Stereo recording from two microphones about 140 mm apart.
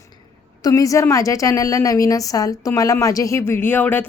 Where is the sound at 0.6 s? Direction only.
25° left (ahead or behind).